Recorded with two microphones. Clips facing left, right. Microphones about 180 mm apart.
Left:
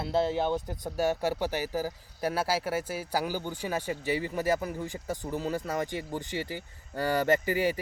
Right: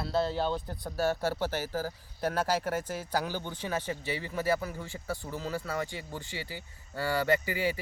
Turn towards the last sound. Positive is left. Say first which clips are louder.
# left 3 dB
turn(degrees=45)  # may be behind; listen again after turning